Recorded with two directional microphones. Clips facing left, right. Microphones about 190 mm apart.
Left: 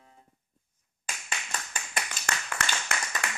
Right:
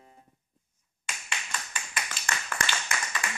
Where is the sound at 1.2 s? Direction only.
40° left (ahead or behind).